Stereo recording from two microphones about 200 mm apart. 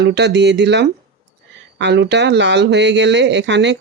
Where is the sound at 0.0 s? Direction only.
55° right (ahead or behind).